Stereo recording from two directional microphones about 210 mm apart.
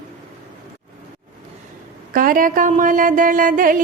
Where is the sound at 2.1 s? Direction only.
40° right (ahead or behind).